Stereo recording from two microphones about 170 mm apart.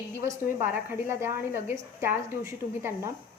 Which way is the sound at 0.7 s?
15° right (ahead or behind).